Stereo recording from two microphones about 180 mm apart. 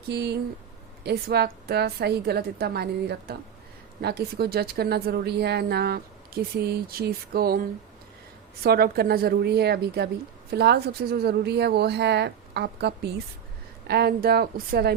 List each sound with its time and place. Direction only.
0.1 s a woman's voice: 65° right (ahead or behind)
8.6 s a woman's voice: 60° right (ahead or behind)